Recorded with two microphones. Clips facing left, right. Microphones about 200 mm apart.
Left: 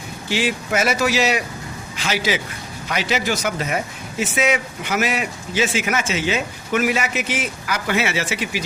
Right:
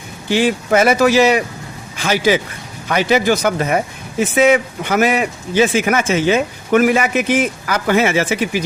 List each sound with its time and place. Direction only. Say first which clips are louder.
0.3 s a man's voice: right 7 dB; 50° right (ahead or behind)